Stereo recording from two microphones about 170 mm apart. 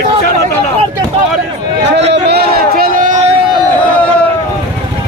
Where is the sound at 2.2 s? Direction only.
70° right (ahead or behind); by 3.3 s 50° right (ahead or behind).